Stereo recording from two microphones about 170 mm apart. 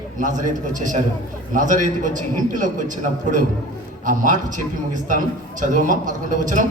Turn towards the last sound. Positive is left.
turn(degrees=-50)  # may be behind; listen again after turning